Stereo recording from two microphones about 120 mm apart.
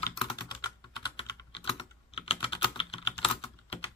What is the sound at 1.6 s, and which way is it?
Typing, 45° left (ahead or behind).